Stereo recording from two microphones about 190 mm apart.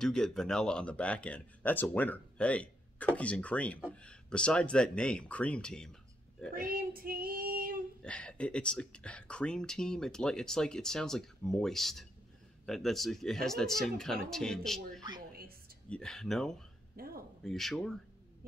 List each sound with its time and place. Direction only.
0.0 s speech: 5° left (ahead or behind)
6.5 s child singing: 50° right (ahead or behind)
8.0 s speech: 5° left (ahead or behind)
15.0 s a sound: 20° right (ahead or behind)
15.9 s speech: 5° left (ahead or behind)
16.9 s a sound: 50° right (ahead or behind)
17.4 s speech: centre (ahead or behind)